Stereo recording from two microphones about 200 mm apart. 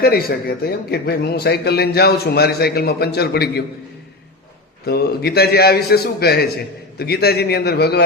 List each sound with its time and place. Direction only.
0.0 s speech: 50° left (ahead or behind)
4.9 s speech: 55° left (ahead or behind)